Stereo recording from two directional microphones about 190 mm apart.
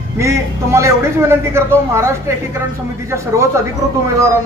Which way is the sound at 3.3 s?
15° right (ahead or behind).